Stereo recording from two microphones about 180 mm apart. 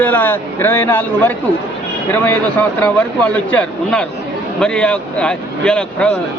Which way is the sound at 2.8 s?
5° left (ahead or behind).